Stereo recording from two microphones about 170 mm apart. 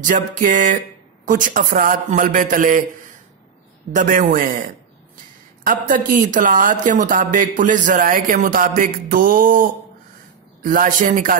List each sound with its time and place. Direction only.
0.0 s speech: 50° right (ahead or behind)